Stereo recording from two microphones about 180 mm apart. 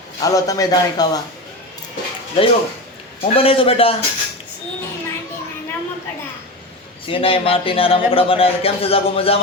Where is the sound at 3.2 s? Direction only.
30° left (ahead or behind).